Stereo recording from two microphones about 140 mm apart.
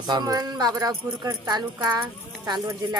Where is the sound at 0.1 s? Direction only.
30° right (ahead or behind).